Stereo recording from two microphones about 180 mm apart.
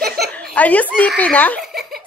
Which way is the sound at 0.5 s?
10° left (ahead or behind).